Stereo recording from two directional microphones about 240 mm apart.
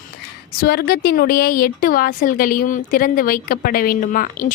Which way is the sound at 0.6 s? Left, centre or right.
Left.